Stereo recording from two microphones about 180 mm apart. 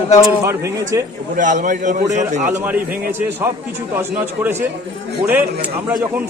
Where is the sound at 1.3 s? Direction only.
45° right (ahead or behind).